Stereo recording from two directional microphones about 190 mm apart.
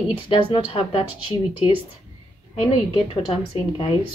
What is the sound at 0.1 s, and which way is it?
Speech, 25° left (ahead or behind).